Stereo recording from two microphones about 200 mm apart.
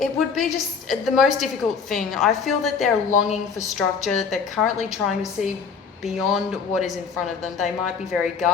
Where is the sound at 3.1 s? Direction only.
35° left (ahead or behind).